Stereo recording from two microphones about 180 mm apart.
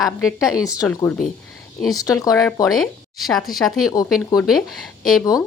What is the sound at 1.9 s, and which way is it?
Speech, 20° left (ahead or behind).